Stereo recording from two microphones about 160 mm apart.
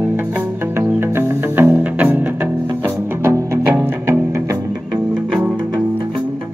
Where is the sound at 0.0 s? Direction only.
10° right (ahead or behind).